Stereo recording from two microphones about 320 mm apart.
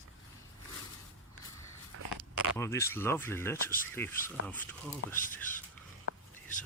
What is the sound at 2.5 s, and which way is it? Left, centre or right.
Speech, centre.